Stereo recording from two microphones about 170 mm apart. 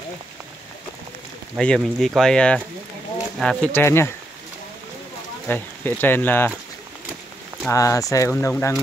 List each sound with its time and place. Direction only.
1.6 s speech: 5° left (ahead or behind)
5.5 s speech: 10° left (ahead or behind)
7.6 s speech: 20° left (ahead or behind)